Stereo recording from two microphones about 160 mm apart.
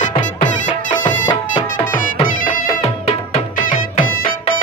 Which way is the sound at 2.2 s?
55° left (ahead or behind).